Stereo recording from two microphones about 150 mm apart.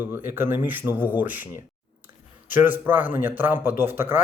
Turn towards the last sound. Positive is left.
turn(degrees=-15)  # may be behind; listen again after turning